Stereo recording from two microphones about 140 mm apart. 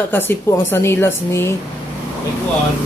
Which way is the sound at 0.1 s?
15° left (ahead or behind).